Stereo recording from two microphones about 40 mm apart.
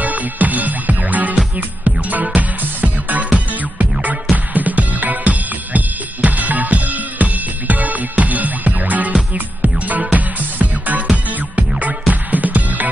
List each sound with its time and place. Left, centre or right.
0.0 s music: right